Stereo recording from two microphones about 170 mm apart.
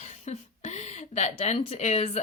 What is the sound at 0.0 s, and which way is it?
Speech, 40° left (ahead or behind).